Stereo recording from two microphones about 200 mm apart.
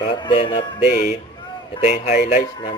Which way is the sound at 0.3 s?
25° left (ahead or behind).